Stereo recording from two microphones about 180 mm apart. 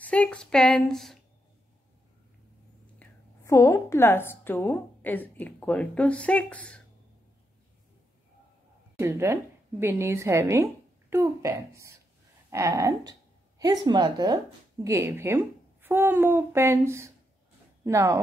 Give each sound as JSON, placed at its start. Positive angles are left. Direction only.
{"t": 0.0, "sound": "a woman's voice", "side_deg": 5}
{"t": 3.0, "sound": "a woman's voice", "side_deg": 15}
{"t": 8.9, "sound": "a woman's voice", "side_deg": -15}